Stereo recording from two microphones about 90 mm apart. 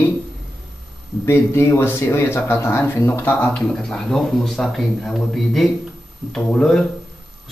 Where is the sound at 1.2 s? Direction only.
30° left (ahead or behind).